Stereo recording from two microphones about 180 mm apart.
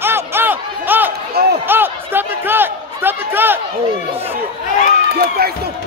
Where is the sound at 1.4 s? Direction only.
60° right (ahead or behind).